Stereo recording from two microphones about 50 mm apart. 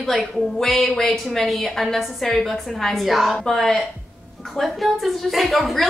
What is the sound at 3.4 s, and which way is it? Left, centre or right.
A woman's voice, centre.